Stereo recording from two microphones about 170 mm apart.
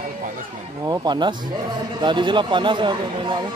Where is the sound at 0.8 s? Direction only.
20° right (ahead or behind).